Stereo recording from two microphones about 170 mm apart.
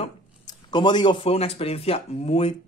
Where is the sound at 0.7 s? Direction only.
25° left (ahead or behind).